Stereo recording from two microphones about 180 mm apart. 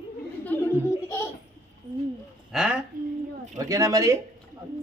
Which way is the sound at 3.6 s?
20° right (ahead or behind).